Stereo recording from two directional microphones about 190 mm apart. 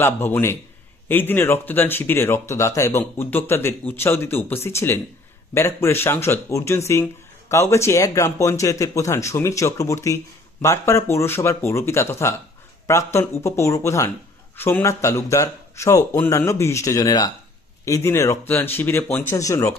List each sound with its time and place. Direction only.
0.0 s speech: 10° left (ahead or behind)